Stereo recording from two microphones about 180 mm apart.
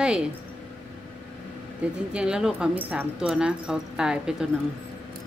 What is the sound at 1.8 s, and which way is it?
Speech, 5° right (ahead or behind).